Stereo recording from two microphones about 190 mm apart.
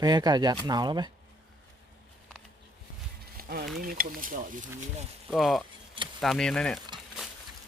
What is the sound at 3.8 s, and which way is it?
Speech, 45° right (ahead or behind).